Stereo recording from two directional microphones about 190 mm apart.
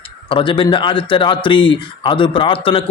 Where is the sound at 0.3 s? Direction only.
25° left (ahead or behind).